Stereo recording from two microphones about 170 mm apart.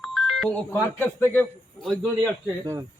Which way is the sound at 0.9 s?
10° left (ahead or behind).